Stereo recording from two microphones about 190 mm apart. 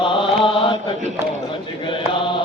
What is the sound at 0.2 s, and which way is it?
Mantra, 25° left (ahead or behind).